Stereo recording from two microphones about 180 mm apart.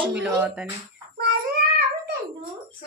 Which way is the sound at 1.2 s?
65° right (ahead or behind).